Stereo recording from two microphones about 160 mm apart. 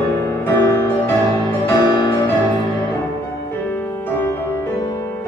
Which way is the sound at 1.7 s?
25° left (ahead or behind).